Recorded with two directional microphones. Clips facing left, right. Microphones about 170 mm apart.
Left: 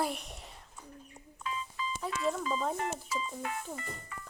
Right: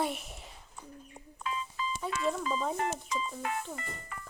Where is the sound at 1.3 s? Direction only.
65° right (ahead or behind).